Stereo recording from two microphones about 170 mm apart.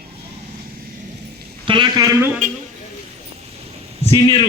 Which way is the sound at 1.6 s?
30° right (ahead or behind).